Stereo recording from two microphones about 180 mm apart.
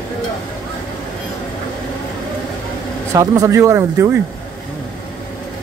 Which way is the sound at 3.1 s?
15° right (ahead or behind).